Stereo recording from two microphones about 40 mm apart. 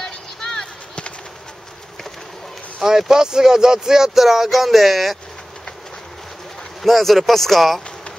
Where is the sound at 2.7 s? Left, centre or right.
Centre.